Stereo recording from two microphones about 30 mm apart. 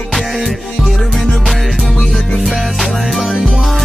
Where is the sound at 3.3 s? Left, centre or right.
Centre.